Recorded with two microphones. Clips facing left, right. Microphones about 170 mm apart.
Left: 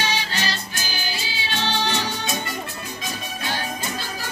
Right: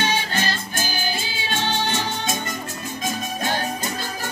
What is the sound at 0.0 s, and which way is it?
Music, 50° right (ahead or behind).